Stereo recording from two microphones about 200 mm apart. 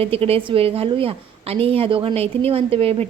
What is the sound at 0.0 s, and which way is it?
A woman's voice, 30° right (ahead or behind).